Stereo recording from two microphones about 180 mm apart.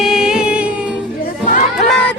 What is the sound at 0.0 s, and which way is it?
Music, 5° right (ahead or behind).